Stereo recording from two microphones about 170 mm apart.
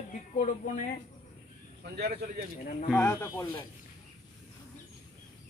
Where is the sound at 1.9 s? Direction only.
75° right (ahead or behind).